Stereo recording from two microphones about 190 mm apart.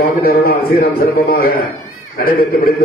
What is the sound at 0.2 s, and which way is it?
A man's voice, 55° left (ahead or behind).